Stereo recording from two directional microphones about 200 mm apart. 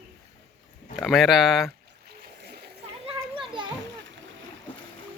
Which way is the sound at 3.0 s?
25° right (ahead or behind).